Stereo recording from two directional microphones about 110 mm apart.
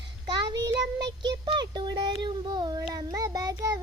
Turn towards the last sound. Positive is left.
turn(degrees=-30)  # may be behind; listen again after turning